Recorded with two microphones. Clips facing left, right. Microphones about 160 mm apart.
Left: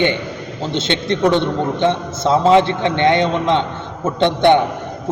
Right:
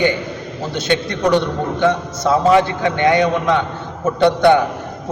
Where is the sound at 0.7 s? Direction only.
25° left (ahead or behind).